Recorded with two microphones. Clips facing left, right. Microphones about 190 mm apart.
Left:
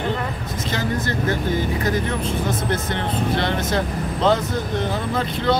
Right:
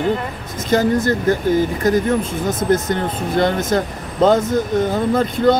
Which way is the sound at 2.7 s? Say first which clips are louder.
Right 6 dB; 45° right (ahead or behind).